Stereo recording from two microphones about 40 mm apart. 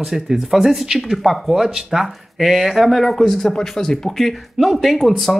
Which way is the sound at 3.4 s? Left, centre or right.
Centre.